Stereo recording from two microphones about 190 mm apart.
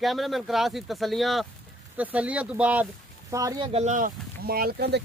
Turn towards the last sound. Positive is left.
turn(degrees=-55)  # may be behind; listen again after turning